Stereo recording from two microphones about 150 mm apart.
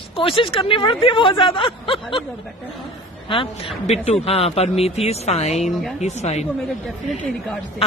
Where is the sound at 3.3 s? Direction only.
35° left (ahead or behind).